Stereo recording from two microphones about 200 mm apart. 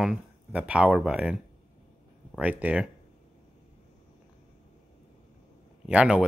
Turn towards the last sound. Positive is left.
turn(degrees=-5)  # may be behind; listen again after turning